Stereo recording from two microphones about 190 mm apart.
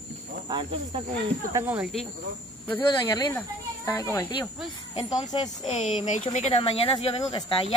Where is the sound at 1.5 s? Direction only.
10° right (ahead or behind).